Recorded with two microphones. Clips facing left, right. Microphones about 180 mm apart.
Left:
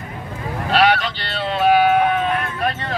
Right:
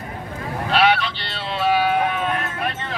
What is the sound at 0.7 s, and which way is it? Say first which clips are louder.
Vehicle: left 2 dB; 45° left (ahead or behind).